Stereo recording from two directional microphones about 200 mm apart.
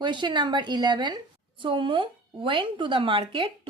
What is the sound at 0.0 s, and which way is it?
A woman's voice, 25° right (ahead or behind).